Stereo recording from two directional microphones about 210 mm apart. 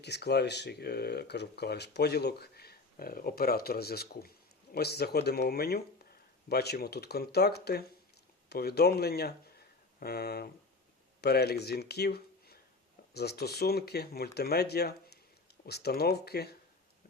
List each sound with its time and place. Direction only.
0.0 s speech: 55° left (ahead or behind)